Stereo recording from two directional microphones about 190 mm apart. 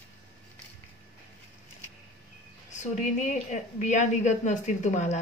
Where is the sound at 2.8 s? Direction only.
40° left (ahead or behind).